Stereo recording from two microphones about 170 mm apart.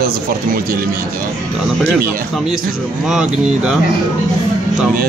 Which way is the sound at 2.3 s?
Centre (ahead or behind).